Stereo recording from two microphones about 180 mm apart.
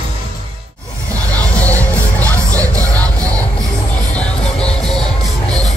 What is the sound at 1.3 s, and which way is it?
Music, 10° left (ahead or behind).